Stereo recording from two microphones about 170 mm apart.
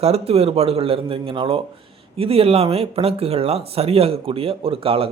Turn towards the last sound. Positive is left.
turn(degrees=-35)  # may be behind; listen again after turning